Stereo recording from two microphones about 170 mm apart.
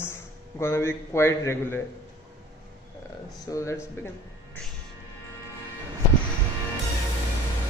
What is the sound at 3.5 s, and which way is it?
Speech, 15° left (ahead or behind).